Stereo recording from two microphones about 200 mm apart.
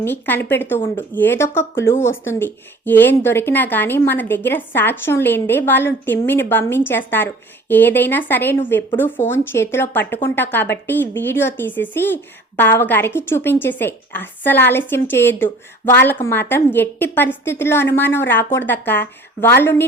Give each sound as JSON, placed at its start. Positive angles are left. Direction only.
{"t": 0.0, "sound": "speech", "side_deg": 10}